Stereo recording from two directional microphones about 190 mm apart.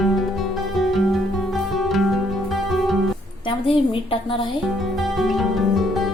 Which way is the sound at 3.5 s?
30° left (ahead or behind).